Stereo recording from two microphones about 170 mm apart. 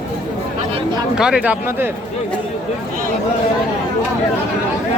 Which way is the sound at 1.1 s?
5° right (ahead or behind).